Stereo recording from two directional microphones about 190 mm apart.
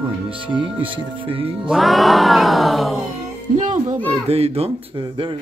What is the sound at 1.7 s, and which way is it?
Music, centre (ahead or behind).